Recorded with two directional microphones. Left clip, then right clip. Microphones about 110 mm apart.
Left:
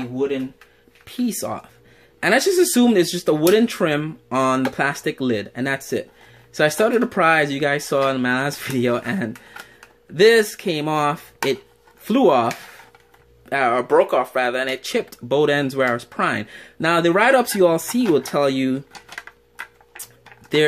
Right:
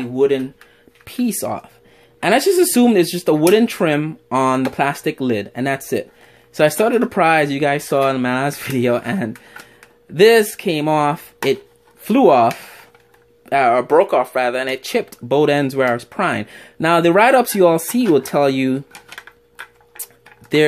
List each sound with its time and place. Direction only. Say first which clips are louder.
1.0 s speech: right 3 dB; 50° right (ahead or behind)
1.3 s speech: right 4 dB; 30° right (ahead or behind)
13.5 s speech: right 4 dB; 25° right (ahead or behind)
20.0 s a sound: right 2 dB; 30° right (ahead or behind)